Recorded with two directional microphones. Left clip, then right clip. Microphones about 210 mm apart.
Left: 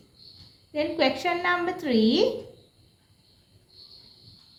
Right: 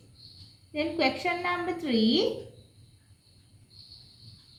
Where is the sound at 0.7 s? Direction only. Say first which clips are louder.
Left 3 dB; 30° left (ahead or behind).